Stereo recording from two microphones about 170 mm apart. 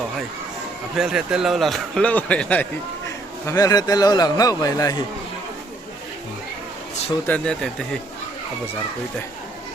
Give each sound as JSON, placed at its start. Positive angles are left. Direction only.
{"t": 0.9, "sound": "speech", "side_deg": -5}
{"t": 3.4, "sound": "a man's voice", "side_deg": 20}
{"t": 7.3, "sound": "speech", "side_deg": 5}